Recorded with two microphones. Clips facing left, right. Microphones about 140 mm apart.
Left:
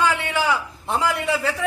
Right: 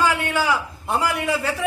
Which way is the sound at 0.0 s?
10° right (ahead or behind).